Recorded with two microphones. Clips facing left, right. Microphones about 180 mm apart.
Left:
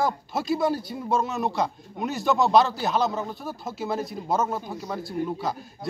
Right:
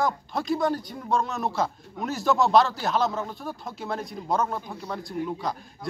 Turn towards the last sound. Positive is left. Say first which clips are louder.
# left 2 dB
turn(degrees=5)  # may be behind; listen again after turning